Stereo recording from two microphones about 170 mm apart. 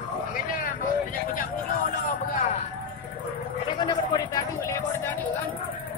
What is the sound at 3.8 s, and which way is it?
Speech, 25° left (ahead or behind).